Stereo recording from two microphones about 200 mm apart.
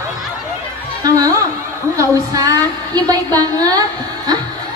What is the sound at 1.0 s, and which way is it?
Music, 20° right (ahead or behind).